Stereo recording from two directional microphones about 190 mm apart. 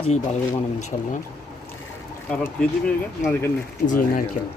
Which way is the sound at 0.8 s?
40° left (ahead or behind).